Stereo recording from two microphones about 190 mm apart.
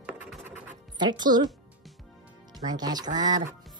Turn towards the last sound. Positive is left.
turn(degrees=-20)  # may be behind; listen again after turning